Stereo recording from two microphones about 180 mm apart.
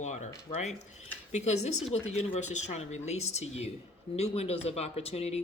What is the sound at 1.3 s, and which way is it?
Speech, 40° left (ahead or behind).